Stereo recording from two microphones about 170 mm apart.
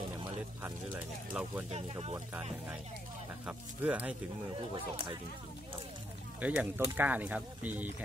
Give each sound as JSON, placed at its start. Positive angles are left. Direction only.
{"t": 0.6, "sound": "speech", "side_deg": -10}
{"t": 1.7, "sound": "speech", "side_deg": -35}
{"t": 3.4, "sound": "speech", "side_deg": -10}
{"t": 6.4, "sound": "speech", "side_deg": -10}